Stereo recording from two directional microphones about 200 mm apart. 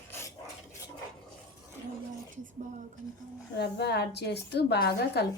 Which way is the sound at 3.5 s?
55° left (ahead or behind).